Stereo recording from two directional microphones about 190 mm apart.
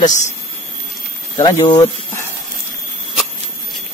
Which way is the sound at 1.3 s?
20° left (ahead or behind).